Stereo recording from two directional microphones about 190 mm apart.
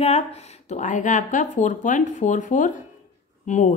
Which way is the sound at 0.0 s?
35° left (ahead or behind).